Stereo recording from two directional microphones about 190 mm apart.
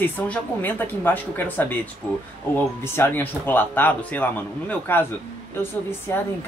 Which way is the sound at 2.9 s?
10° left (ahead or behind).